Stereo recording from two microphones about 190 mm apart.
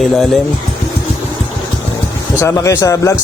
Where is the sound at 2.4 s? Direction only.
15° left (ahead or behind).